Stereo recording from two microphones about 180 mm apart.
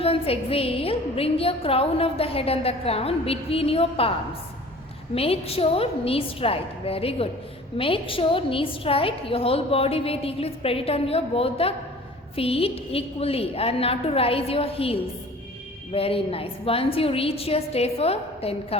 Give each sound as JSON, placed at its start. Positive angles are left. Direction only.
{"t": 0.0, "sound": "a woman's voice", "side_deg": 30}
{"t": 5.1, "sound": "a woman's voice", "side_deg": 35}